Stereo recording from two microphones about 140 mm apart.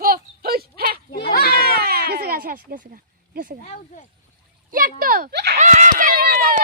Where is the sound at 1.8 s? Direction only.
90° right.